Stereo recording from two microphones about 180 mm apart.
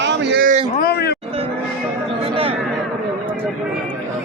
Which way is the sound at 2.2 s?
30° right (ahead or behind).